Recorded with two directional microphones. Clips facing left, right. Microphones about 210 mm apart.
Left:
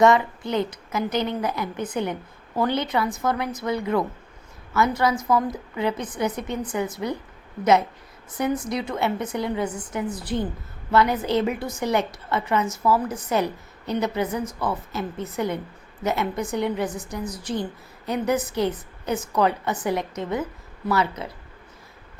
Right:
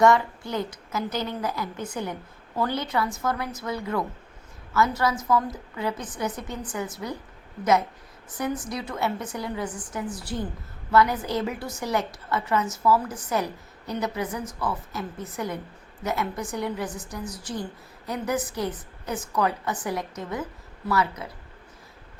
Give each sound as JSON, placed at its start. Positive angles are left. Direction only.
{"t": 0.0, "sound": "a woman's voice", "side_deg": 20}
{"t": 8.4, "sound": "a woman's voice", "side_deg": 25}